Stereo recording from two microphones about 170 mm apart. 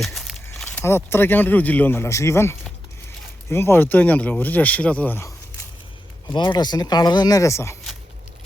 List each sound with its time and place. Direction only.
0.0 s a sound: centre (ahead or behind)
0.6 s speech: 10° left (ahead or behind)
6.2 s speech: 25° left (ahead or behind)